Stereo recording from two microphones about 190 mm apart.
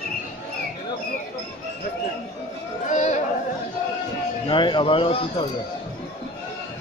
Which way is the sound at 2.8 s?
40° left (ahead or behind).